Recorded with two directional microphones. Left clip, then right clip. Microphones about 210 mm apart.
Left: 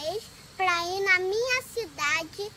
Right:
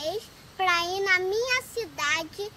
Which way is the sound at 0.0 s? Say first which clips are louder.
Right 1 dB; 5° right (ahead or behind).